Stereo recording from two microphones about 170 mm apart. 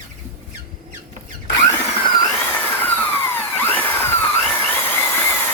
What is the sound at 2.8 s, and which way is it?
Vacuum cleaner, 10° left (ahead or behind).